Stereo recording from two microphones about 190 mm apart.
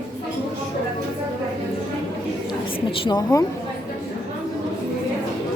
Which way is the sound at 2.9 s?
25° left (ahead or behind).